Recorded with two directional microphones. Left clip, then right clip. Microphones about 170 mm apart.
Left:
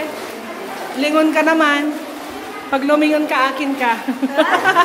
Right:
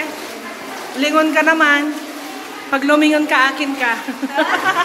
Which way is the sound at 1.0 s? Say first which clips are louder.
Right 1 dB; 15° left (ahead or behind).